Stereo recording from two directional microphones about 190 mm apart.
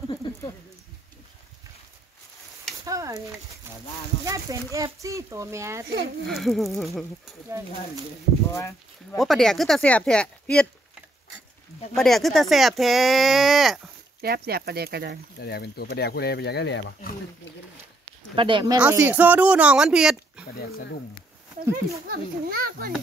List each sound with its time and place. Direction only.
0.1 s a sound: 25° left (ahead or behind)
2.8 s a sound: 15° right (ahead or behind)
4.2 s speech: 15° right (ahead or behind)
6.2 s speech: centre (ahead or behind)
8.5 s speech: 15° left (ahead or behind)
9.2 s speech: centre (ahead or behind)
11.9 s speech: centre (ahead or behind)
14.2 s speech: 55° right (ahead or behind)
15.4 s speech: 55° left (ahead or behind)
18.3 s speech: 25° right (ahead or behind)
18.8 s speech: 10° right (ahead or behind)
20.6 s speech: 55° left (ahead or behind)
22.0 s a child's voice: 50° right (ahead or behind)